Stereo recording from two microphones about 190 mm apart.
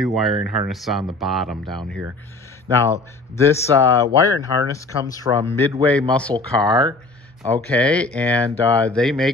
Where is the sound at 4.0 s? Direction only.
15° right (ahead or behind).